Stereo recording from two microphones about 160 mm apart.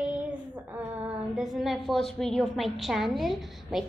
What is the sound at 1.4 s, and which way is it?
A woman's voice, centre (ahead or behind).